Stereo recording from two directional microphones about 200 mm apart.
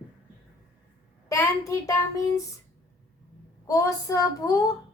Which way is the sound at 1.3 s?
15° left (ahead or behind).